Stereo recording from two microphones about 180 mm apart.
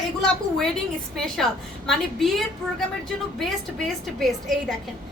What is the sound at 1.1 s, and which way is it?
A woman's voice, centre (ahead or behind).